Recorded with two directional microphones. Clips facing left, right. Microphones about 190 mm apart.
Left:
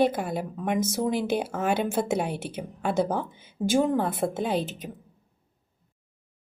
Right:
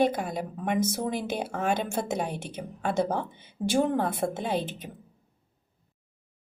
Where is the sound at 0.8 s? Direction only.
55° right (ahead or behind).